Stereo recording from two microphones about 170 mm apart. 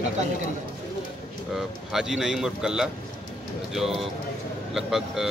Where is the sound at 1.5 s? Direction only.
5° right (ahead or behind).